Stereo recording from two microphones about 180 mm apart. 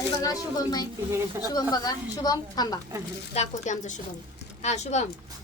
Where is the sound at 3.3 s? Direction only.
40° left (ahead or behind).